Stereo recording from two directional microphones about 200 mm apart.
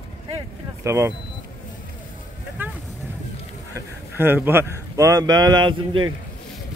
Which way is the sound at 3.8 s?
10° right (ahead or behind).